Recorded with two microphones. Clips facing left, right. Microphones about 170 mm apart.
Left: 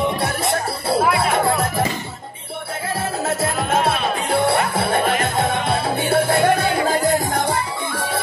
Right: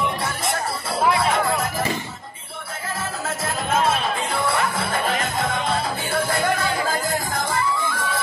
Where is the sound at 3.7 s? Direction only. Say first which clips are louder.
Right 1 dB; 65° left (ahead or behind).